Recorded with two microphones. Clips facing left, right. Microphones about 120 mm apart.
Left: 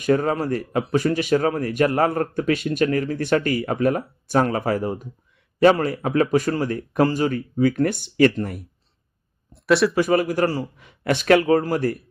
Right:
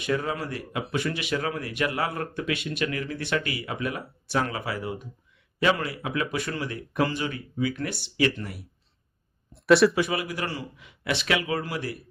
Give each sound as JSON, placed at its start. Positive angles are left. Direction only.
{"t": 0.0, "sound": "speech", "side_deg": 45}
{"t": 9.5, "sound": "a sound", "side_deg": 0}
{"t": 10.0, "sound": "speech", "side_deg": 45}